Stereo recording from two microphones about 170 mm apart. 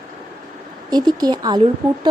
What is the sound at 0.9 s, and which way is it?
Speech, 25° right (ahead or behind).